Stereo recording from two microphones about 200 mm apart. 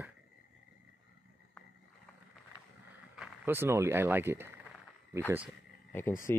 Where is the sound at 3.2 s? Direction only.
10° right (ahead or behind).